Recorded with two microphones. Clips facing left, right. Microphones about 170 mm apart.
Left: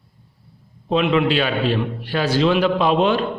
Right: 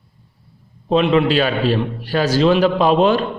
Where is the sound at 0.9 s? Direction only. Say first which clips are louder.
Right 3 dB; 35° right (ahead or behind).